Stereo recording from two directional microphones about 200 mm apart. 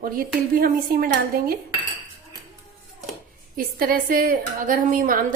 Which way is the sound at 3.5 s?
45° right (ahead or behind).